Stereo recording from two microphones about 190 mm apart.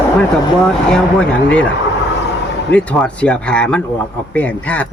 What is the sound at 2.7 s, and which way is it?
Speech, 5° left (ahead or behind).